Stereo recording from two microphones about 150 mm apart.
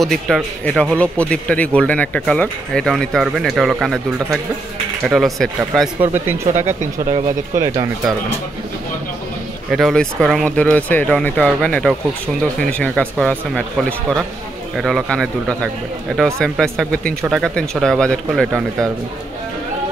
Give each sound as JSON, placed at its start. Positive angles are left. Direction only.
{"t": 0.0, "sound": "speech", "side_deg": 5}
{"t": 6.4, "sound": "speech", "side_deg": -55}
{"t": 9.7, "sound": "speech", "side_deg": 0}